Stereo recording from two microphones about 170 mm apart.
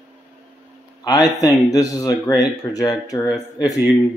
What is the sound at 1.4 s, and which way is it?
Speech, 20° left (ahead or behind).